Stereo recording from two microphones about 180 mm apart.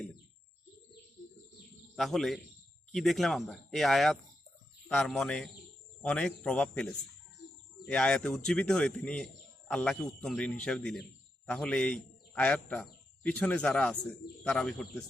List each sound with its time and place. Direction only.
1.2 s bird: 50° left (ahead or behind)
2.0 s a man's voice: centre (ahead or behind)